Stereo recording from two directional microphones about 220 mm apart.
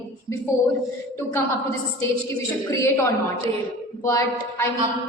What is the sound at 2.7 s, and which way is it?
A woman's voice, 10° left (ahead or behind).